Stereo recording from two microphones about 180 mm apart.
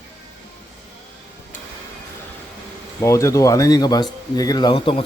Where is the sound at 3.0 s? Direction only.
15° left (ahead or behind).